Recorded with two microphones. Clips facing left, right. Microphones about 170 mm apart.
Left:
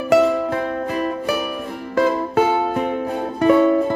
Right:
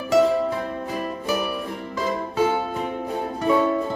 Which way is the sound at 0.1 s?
65° left (ahead or behind).